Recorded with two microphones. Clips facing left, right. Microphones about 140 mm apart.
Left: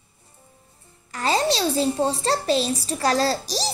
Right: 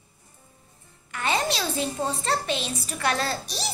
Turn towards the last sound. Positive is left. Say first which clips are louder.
# left 7 dB
turn(degrees=35)  # may be behind; listen again after turning